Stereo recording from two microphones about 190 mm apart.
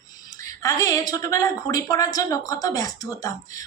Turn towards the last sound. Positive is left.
turn(degrees=15)  # may be behind; listen again after turning